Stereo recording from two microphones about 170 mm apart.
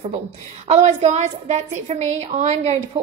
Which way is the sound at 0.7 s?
40° right (ahead or behind).